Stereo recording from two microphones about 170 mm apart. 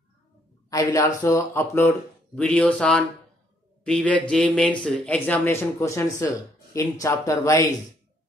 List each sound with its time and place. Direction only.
0.7 s speech: 20° left (ahead or behind)